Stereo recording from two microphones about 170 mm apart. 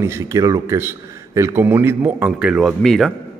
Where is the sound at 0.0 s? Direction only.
15° right (ahead or behind).